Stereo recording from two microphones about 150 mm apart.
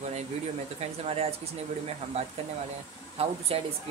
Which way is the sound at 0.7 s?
40° right (ahead or behind).